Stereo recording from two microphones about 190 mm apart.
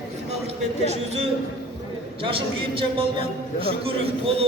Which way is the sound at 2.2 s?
30° right (ahead or behind).